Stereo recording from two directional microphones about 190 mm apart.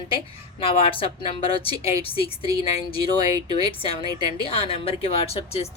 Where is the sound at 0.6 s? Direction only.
30° left (ahead or behind).